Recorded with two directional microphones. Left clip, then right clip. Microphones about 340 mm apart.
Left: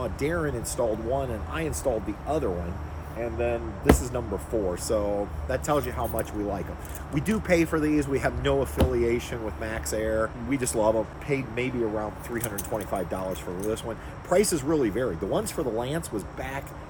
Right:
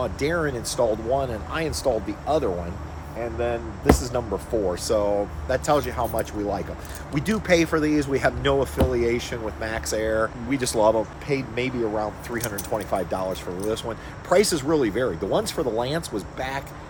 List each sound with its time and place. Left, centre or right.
0.0 s speech: centre
3.2 s speech: centre